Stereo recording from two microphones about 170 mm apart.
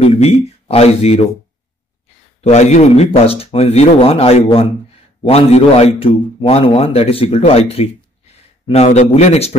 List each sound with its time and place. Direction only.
0.0 s a man's voice: 40° left (ahead or behind)
2.4 s a man's voice: 40° left (ahead or behind)